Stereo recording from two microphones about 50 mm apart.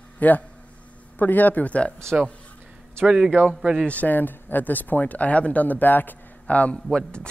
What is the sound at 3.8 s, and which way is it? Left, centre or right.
Speech, left.